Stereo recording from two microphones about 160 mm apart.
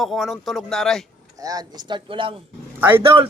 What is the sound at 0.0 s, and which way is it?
Speech, centre (ahead or behind).